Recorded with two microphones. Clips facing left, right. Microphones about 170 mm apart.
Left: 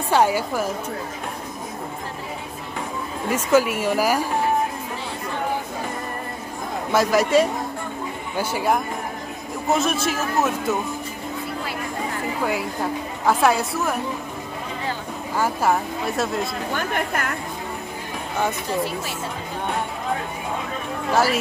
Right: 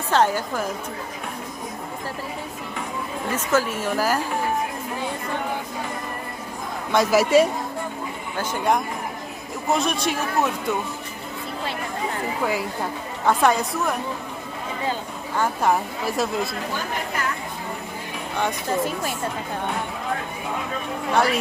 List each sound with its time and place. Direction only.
0.1 s a woman's voice: 10° left (ahead or behind)
3.3 s a woman's voice: 10° left (ahead or behind)
6.9 s speech: centre (ahead or behind)
8.4 s speech: 10° left (ahead or behind)
13.2 s speech: 5° left (ahead or behind)
15.3 s speech: 5° left (ahead or behind)
16.7 s a woman's voice: 55° left (ahead or behind)
21.1 s speech: 5° left (ahead or behind)